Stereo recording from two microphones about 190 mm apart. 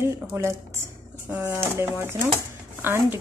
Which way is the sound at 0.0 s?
15° right (ahead or behind).